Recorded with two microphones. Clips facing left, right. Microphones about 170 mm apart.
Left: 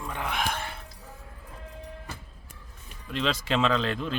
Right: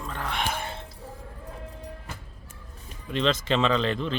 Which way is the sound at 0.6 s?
25° right (ahead or behind).